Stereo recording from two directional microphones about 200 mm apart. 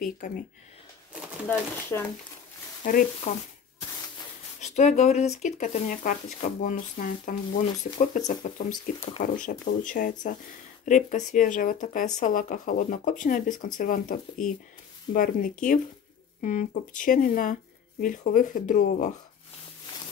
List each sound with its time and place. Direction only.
0.2 s speech: 45° left (ahead or behind)
1.5 s speech: 15° left (ahead or behind)
2.8 s speech: 40° left (ahead or behind)
4.6 s speech: 35° left (ahead or behind)